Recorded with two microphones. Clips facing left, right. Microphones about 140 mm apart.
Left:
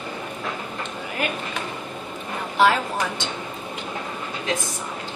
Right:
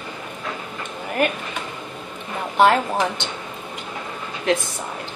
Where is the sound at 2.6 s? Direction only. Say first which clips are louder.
Right 3 dB; 50° right (ahead or behind).